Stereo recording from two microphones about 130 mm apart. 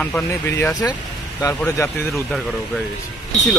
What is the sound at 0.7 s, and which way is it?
Speech, 30° left (ahead or behind).